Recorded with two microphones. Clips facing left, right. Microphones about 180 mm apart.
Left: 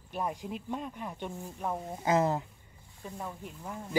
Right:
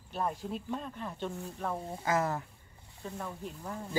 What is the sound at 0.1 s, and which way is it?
Speech, 15° left (ahead or behind).